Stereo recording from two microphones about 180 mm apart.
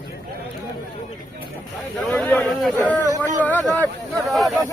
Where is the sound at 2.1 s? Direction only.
5° left (ahead or behind).